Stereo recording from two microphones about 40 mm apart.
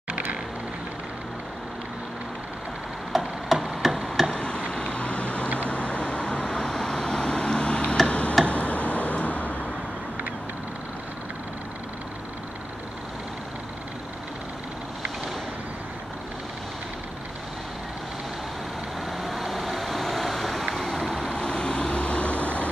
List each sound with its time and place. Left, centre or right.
3.1 s tick-tock: centre
3.6 s a sound: centre
4.3 s a sound: left
5.7 s vehicle: left
6.5 s vehicle: centre
8.1 s tick-tock: left
8.5 s a sound: left
19.2 s vehicle: centre
21.4 s vehicle: left